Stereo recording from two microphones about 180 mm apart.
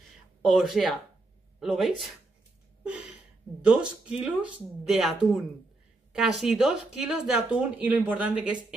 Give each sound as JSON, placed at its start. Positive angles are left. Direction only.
{"t": 0.5, "sound": "speech", "side_deg": 0}
{"t": 2.8, "sound": "a sound", "side_deg": -5}
{"t": 3.6, "sound": "speech", "side_deg": -5}